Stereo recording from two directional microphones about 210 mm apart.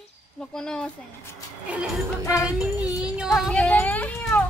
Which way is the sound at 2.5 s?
5° right (ahead or behind).